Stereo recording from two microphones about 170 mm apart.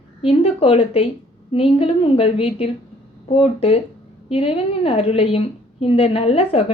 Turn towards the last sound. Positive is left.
turn(degrees=35)  # may be behind; listen again after turning